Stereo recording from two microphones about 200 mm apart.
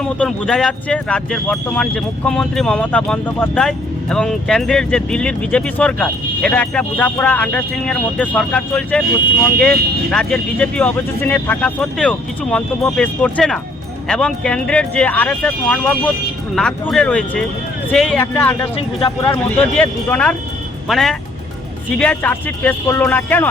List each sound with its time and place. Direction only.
0.0 s speech: 5° left (ahead or behind)
18.8 s speech: 25° left (ahead or behind)
19.3 s speech: 5° left (ahead or behind)